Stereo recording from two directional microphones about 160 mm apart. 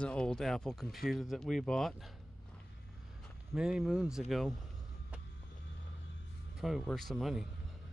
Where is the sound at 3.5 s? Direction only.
5° right (ahead or behind).